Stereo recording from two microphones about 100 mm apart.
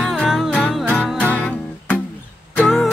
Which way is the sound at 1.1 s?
15° left (ahead or behind).